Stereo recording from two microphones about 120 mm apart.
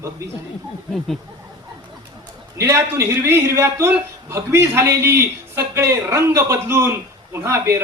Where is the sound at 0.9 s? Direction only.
Centre (ahead or behind).